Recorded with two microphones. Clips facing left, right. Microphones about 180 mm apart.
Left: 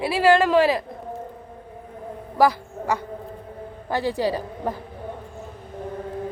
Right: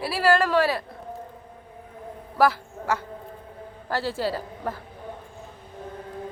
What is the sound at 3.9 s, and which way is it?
Speech, 15° left (ahead or behind).